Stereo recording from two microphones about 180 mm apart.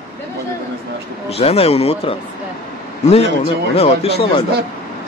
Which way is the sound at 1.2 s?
35° left (ahead or behind).